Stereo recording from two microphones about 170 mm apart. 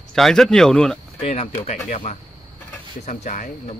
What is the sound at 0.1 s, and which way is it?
Speech, centre (ahead or behind).